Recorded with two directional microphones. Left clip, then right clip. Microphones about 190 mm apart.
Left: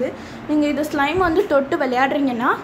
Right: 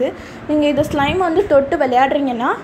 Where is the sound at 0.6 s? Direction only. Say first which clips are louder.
Right 4 dB; 10° right (ahead or behind).